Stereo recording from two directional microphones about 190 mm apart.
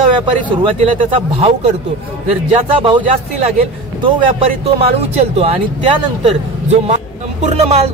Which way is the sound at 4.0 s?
30° right (ahead or behind).